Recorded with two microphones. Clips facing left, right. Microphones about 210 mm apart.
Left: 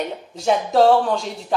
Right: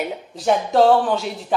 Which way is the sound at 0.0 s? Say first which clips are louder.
Even; 5° right (ahead or behind).